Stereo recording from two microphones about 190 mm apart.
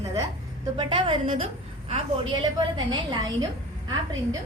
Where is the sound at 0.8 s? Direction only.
25° right (ahead or behind).